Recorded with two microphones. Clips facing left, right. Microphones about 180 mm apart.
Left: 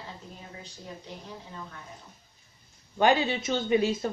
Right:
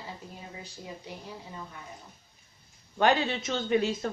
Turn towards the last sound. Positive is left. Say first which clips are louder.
# left 2 dB
turn(degrees=10)  # may be behind; listen again after turning